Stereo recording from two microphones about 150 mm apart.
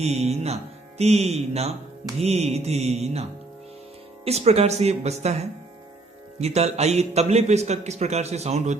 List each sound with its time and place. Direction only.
0.0 s speech: 45° right (ahead or behind)
4.3 s speech: 45° right (ahead or behind)